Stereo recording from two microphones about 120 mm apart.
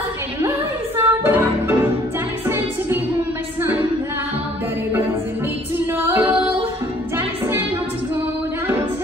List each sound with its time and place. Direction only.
0.9 s music: 20° right (ahead or behind)
6.0 s singing: 15° right (ahead or behind)
7.2 s music: 20° right (ahead or behind)